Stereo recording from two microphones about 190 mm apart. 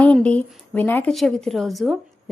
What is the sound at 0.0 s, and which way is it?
A woman's voice, 5° left (ahead or behind).